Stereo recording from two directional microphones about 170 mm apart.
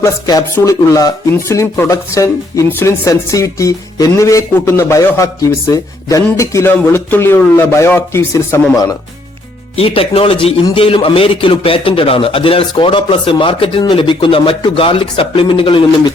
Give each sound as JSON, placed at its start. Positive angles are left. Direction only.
{"t": 0.0, "sound": "speech", "side_deg": 20}
{"t": 9.7, "sound": "a man's voice", "side_deg": 35}